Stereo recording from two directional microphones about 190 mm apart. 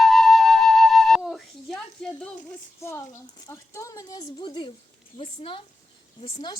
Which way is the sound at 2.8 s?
15° left (ahead or behind).